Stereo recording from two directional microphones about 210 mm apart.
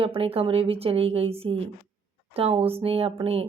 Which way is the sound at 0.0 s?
25° right (ahead or behind).